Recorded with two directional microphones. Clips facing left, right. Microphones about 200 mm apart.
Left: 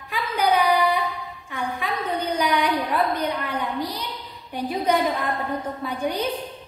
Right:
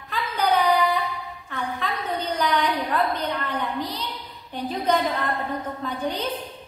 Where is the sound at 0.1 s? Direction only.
10° left (ahead or behind).